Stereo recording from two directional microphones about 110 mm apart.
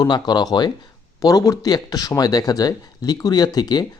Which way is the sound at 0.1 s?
40° left (ahead or behind).